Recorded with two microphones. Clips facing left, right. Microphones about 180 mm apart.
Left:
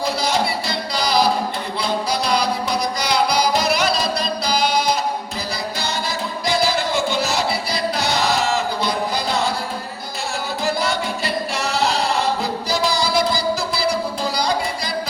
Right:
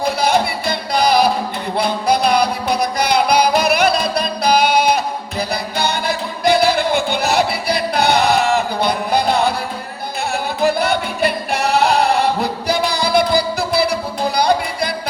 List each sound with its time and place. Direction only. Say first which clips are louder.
0.0 s music: right 4 dB; 55° right (ahead or behind)
10.6 s a capella: right 5 dB; 60° right (ahead or behind)
14.3 s music: right 8 dB; 60° right (ahead or behind)